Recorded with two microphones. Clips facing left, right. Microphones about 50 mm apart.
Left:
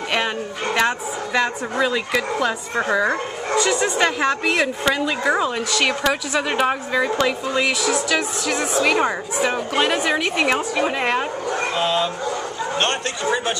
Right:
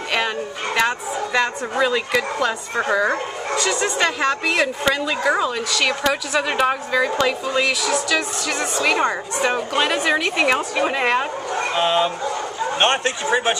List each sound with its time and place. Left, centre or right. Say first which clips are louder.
0.7 s a woman's voice: right 1 dB; centre
11.7 s a man's voice: right 4 dB; right